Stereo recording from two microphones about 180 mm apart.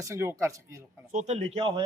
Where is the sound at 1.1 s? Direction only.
40° right (ahead or behind).